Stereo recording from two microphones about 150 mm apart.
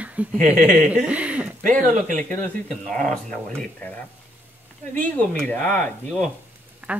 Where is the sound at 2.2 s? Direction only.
10° left (ahead or behind).